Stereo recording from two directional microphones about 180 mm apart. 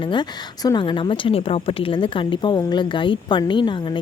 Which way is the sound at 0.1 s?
25° left (ahead or behind).